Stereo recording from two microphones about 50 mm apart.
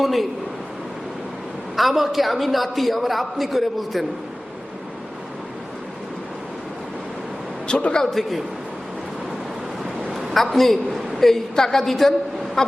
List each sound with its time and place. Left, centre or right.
0.0 s a woman's voice: centre
1.7 s a man's voice: centre
7.7 s a man's voice: left
8.0 s a man's voice: centre
10.1 s a man's voice: centre
12.6 s vehicle: centre